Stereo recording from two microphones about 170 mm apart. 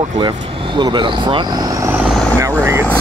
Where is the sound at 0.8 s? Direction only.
25° right (ahead or behind).